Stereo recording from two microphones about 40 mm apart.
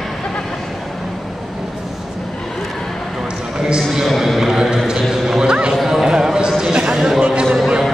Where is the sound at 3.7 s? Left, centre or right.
Centre.